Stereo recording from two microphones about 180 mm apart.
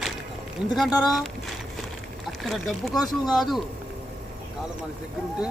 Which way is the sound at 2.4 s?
Centre (ahead or behind).